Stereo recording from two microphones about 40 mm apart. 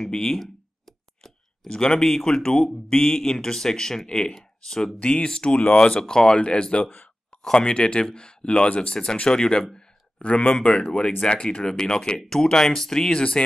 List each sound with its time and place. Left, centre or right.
0.0 s a sound: centre
1.7 s speech: centre; by 10.8 s left
10.9 s speech: centre
13.1 s speech: left